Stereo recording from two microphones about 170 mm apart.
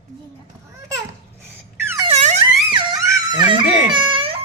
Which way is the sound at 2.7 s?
25° right (ahead or behind).